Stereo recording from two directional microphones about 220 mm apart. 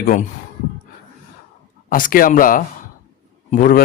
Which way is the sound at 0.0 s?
35° left (ahead or behind).